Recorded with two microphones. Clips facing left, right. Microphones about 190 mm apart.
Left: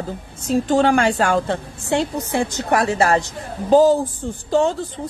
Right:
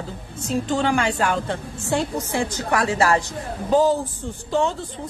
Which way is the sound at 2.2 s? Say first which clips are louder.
Left 3 dB; 60° left (ahead or behind).